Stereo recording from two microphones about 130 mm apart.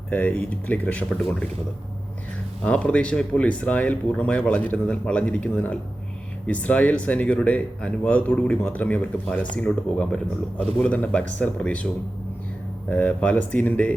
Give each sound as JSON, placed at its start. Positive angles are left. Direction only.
{"t": 0.1, "sound": "speech", "side_deg": 10}
{"t": 2.6, "sound": "speech", "side_deg": 10}
{"t": 12.9, "sound": "speech", "side_deg": 10}